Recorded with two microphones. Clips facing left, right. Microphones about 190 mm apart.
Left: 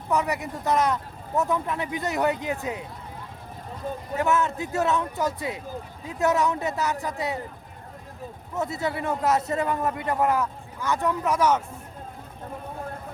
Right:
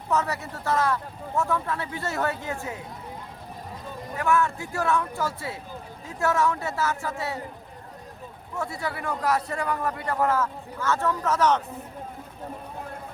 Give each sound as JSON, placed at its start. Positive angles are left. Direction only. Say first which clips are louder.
{"t": 0.1, "sound": "speech", "louder": "left 1 dB", "side_deg": 15}
{"t": 4.2, "sound": "a man's voice", "louder": "even", "side_deg": 20}
{"t": 8.5, "sound": "a man's voice", "louder": "left 3 dB", "side_deg": 20}